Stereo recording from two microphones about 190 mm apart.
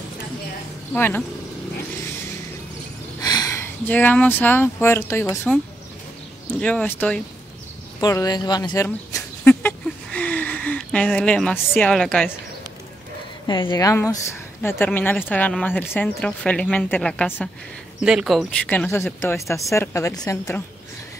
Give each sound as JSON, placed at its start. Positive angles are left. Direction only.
{"t": 0.9, "sound": "speech", "side_deg": 10}
{"t": 3.2, "sound": "speech", "side_deg": 20}
{"t": 6.6, "sound": "speech", "side_deg": 5}
{"t": 8.0, "sound": "a sound", "side_deg": 20}
{"t": 13.5, "sound": "speech", "side_deg": 20}